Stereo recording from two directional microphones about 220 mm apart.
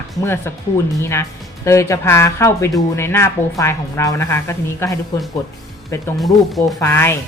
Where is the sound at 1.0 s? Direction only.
10° left (ahead or behind).